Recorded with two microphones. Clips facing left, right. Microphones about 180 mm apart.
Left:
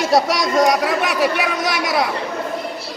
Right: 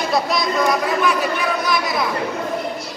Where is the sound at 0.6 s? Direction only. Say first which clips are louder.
Left 1 dB; 80° left.